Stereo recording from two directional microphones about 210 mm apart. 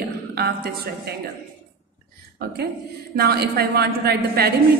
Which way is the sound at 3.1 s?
50° right (ahead or behind).